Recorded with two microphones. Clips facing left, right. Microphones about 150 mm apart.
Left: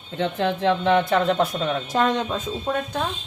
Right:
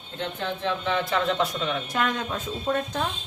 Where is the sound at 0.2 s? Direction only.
85° left; by 1.7 s 50° left (ahead or behind).